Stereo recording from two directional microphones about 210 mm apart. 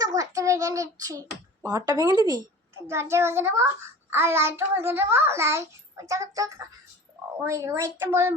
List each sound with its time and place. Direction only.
0.2 s a child's voice: 15° right (ahead or behind)